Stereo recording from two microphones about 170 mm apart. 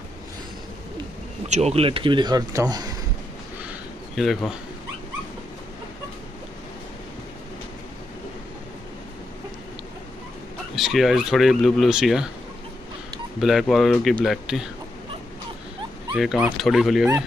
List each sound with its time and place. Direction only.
1.5 s speech: 40° right (ahead or behind); by 2.9 s 20° right (ahead or behind)
10.8 s speech: centre (ahead or behind)
13.4 s speech: centre (ahead or behind)
16.2 s speech: 5° right (ahead or behind)